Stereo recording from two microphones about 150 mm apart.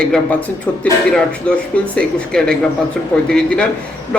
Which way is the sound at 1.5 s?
5° left (ahead or behind).